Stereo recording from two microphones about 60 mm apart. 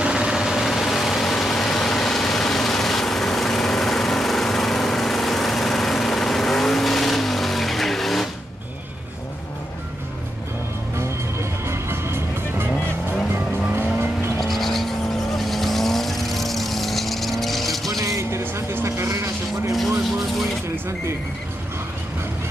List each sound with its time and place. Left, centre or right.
0.0 s vehicle: centre
11.6 s music: right
13.7 s vehicle: right
14.5 s vehicle: centre
18.0 s vehicle: right
18.4 s vehicle: right
18.9 s vehicle: right